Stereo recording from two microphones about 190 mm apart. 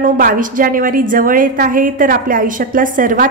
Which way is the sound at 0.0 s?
45° right (ahead or behind).